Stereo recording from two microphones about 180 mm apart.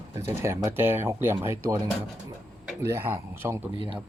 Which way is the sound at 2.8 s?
15° right (ahead or behind).